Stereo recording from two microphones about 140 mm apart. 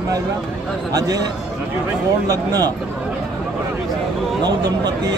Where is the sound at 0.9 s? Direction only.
25° right (ahead or behind).